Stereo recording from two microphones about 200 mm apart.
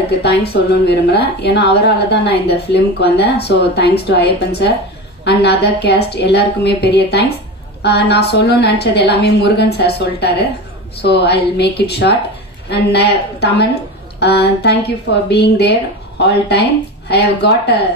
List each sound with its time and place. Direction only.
0.2 s a woman's voice: 55° left (ahead or behind)